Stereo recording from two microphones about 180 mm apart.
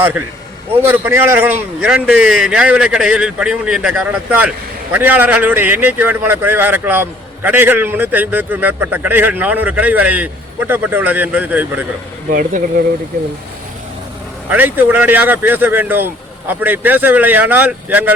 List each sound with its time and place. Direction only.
0.7 s a man's voice: 10° right (ahead or behind)
12.3 s speech: 50° right (ahead or behind)
14.5 s a man's voice: 10° right (ahead or behind)